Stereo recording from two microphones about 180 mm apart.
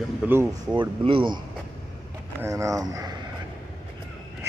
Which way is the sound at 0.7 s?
25° right (ahead or behind).